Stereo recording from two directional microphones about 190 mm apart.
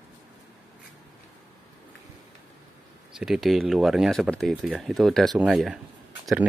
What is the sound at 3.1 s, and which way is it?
Speech, centre (ahead or behind).